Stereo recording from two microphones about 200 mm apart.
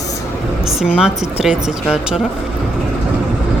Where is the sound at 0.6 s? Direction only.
5° right (ahead or behind).